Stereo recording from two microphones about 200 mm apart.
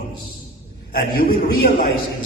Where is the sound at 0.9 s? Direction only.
50° left (ahead or behind).